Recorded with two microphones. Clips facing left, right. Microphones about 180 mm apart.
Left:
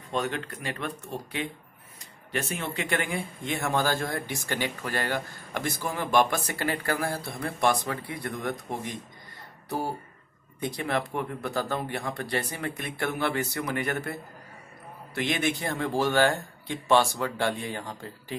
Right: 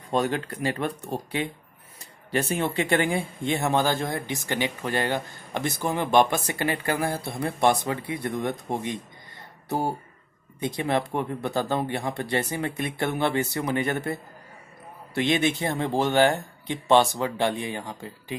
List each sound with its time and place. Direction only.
0.1 s speech: 35° right (ahead or behind)
15.1 s speech: 25° right (ahead or behind)